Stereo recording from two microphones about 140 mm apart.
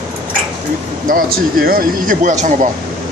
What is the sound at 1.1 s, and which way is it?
Speech, 85° right.